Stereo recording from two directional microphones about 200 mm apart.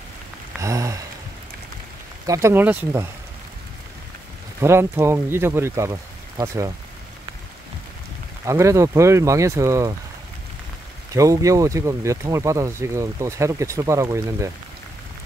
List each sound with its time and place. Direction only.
0.6 s a sound: 15° right (ahead or behind)
2.2 s speech: 15° right (ahead or behind)
4.6 s speech: 15° right (ahead or behind)
8.5 s speech: 15° right (ahead or behind)
11.1 s speech: 15° right (ahead or behind)